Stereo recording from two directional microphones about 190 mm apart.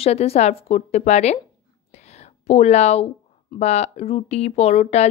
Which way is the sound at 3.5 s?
35° left (ahead or behind).